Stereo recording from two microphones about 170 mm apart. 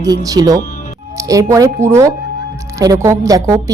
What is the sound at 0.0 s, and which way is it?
A woman's voice, 20° right (ahead or behind).